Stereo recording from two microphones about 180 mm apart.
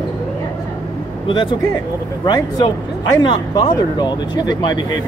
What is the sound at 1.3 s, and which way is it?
Speech, 25° left (ahead or behind).